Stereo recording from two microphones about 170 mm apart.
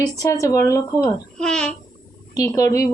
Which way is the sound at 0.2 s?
20° left (ahead or behind).